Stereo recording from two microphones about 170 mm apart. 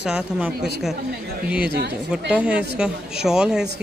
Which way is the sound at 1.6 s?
75° right (ahead or behind).